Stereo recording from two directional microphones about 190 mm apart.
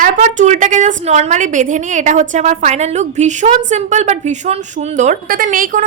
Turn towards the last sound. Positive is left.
turn(degrees=-45)  # may be behind; listen again after turning